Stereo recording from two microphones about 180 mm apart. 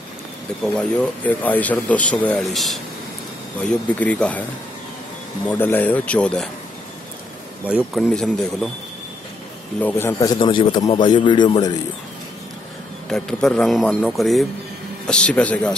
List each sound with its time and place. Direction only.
0.7 s speech: 5° left (ahead or behind)
5.5 s speech: 10° left (ahead or behind)
7.6 s speech: 5° right (ahead or behind)
9.8 s a man's voice: 10° left (ahead or behind); by 11.7 s 25° left (ahead or behind)
13.1 s speech: 5° left (ahead or behind)